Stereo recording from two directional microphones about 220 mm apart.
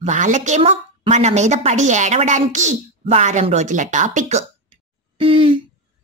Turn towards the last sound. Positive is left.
turn(degrees=-25)  # may be behind; listen again after turning